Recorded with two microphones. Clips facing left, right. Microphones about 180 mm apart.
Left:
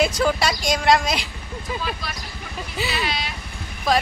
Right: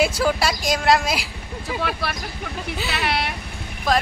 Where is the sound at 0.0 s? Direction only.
5° right (ahead or behind).